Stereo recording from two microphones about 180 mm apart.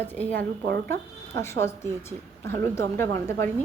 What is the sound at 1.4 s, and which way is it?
A woman's voice, 15° left (ahead or behind).